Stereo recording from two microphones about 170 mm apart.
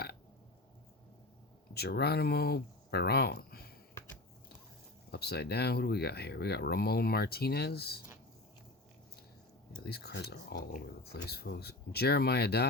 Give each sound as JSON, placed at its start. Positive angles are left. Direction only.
{"t": 1.7, "sound": "speech", "side_deg": 70}
{"t": 5.1, "sound": "speech", "side_deg": 70}
{"t": 9.8, "sound": "speech", "side_deg": 70}